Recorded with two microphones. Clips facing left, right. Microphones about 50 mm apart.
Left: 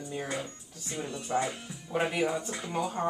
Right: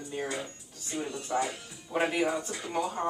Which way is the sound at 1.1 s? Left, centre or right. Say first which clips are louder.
Left 3 dB; centre.